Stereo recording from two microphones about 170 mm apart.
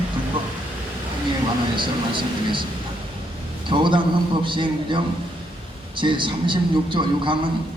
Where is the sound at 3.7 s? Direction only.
30° right (ahead or behind).